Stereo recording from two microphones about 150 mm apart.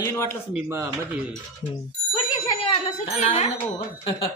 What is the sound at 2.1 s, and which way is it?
Bicycle bell, 30° left (ahead or behind).